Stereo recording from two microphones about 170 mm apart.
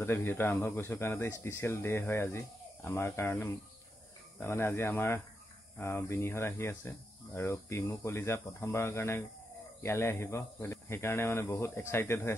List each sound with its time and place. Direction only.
0.0 s speech: 15° left (ahead or behind)